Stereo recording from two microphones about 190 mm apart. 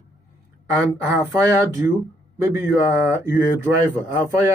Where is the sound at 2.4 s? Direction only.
15° right (ahead or behind).